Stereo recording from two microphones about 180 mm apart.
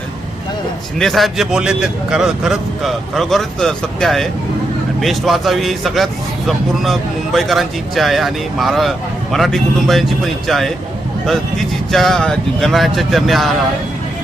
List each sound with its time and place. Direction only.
0.9 s speech: centre (ahead or behind)
11.9 s speech: centre (ahead or behind)